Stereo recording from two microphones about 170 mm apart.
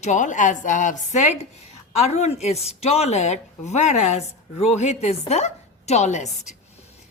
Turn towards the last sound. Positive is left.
turn(degrees=45)  # may be behind; listen again after turning